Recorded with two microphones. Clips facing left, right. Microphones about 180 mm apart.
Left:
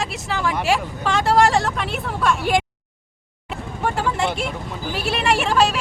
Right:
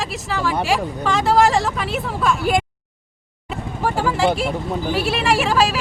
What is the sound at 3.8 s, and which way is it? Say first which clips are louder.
Vehicle: right 3 dB; centre (ahead or behind).